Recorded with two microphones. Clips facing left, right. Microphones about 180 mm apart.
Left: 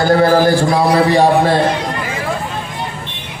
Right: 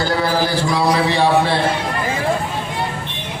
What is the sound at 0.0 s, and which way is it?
A man's voice, 50° left (ahead or behind).